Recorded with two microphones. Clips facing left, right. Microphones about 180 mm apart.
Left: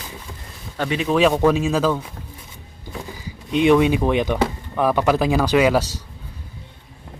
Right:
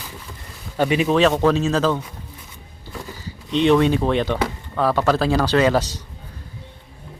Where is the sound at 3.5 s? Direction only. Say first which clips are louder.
Left 1 dB; 10° left (ahead or behind).